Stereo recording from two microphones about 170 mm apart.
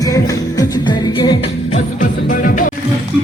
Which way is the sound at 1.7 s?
50° left (ahead or behind).